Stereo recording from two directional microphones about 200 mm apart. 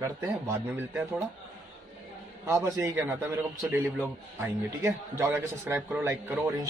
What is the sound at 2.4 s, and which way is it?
A man's voice, 15° right (ahead or behind).